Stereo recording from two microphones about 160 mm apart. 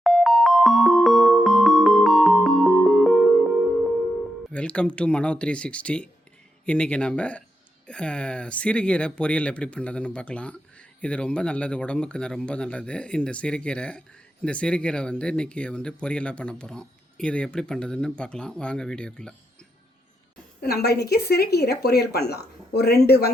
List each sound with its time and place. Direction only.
0.0 s music: centre (ahead or behind)
4.5 s speech: 5° left (ahead or behind)
20.6 s a man's voice: 75° left (ahead or behind)